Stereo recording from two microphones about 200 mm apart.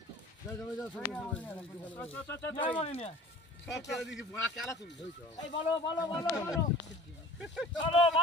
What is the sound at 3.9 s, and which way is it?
Speech, centre (ahead or behind).